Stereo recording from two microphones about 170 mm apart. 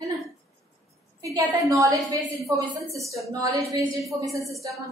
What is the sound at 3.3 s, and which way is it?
Speech, 20° right (ahead or behind).